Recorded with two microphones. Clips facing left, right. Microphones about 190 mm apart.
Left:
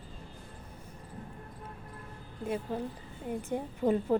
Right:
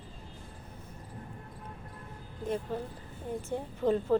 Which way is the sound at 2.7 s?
10° left (ahead or behind).